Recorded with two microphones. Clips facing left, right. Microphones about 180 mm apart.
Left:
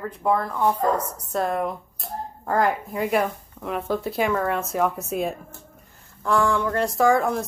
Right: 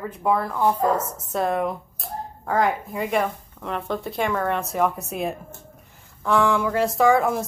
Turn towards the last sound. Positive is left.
turn(degrees=0)  # may be behind; listen again after turning